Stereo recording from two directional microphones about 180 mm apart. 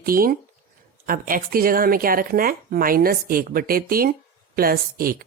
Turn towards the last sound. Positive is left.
turn(degrees=-55)  # may be behind; listen again after turning